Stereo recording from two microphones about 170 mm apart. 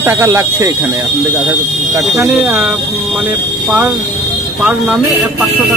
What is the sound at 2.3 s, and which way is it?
Speech, 5° right (ahead or behind).